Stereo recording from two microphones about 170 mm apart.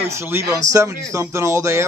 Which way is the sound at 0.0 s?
15° right (ahead or behind).